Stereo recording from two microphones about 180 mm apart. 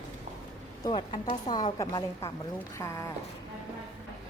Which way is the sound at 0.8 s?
25° left (ahead or behind).